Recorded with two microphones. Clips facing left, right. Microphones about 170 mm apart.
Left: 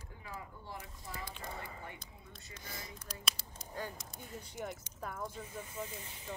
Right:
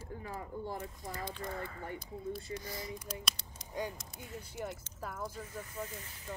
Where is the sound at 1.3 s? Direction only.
15° left (ahead or behind).